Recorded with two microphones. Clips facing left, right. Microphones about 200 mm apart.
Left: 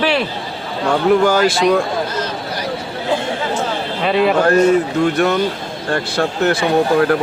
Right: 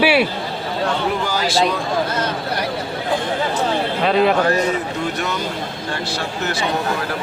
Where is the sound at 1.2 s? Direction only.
55° left (ahead or behind).